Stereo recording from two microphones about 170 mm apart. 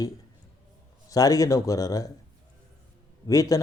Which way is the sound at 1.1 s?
20° left (ahead or behind).